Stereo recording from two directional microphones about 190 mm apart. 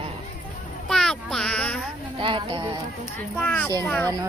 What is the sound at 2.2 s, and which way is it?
Clip-clop, 25° right (ahead or behind).